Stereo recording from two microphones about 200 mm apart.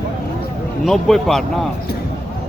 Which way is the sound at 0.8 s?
Centre (ahead or behind).